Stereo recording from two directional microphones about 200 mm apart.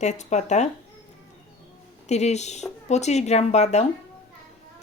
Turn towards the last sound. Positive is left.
turn(degrees=35)  # may be behind; listen again after turning